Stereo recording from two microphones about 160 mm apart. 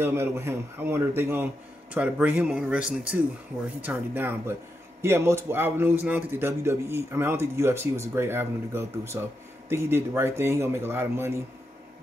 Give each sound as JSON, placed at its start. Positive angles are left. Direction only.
{"t": 0.0, "sound": "speech", "side_deg": -15}